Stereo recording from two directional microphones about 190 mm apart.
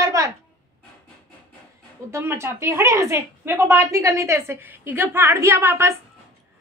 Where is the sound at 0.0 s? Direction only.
15° right (ahead or behind).